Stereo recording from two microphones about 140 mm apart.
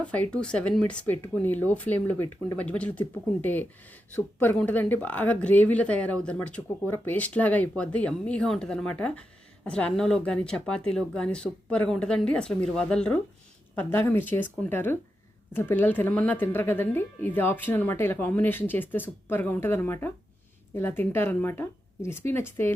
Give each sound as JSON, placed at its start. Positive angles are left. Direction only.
{"t": 0.0, "sound": "speech", "side_deg": 10}